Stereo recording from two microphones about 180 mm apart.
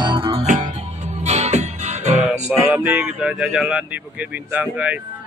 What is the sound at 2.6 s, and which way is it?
Speech, 10° right (ahead or behind).